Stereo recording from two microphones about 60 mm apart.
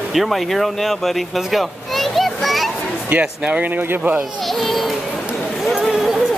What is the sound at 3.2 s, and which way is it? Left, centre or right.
Speech, centre.